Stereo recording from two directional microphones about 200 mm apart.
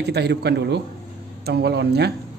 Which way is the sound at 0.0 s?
55° right (ahead or behind).